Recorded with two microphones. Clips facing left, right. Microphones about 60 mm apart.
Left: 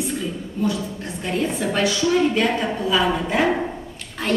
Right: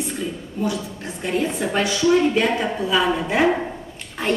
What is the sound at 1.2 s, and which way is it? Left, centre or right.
A woman's voice, centre.